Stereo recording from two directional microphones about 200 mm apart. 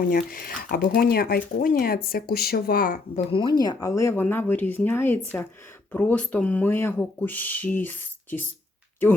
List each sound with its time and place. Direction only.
0.0 s speech: 45° left (ahead or behind)
3.3 s speech: 20° left (ahead or behind)